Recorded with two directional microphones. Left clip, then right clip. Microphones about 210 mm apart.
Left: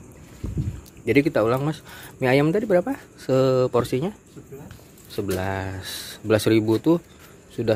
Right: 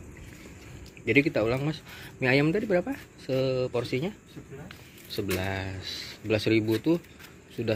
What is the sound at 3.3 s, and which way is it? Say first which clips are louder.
Speech: left 8 dB; 30° left (ahead or behind).